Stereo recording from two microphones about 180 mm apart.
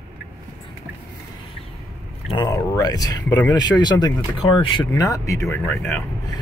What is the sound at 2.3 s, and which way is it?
Speech, 20° left (ahead or behind).